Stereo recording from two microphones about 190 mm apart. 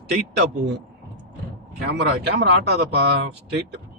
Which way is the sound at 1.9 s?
65° right (ahead or behind).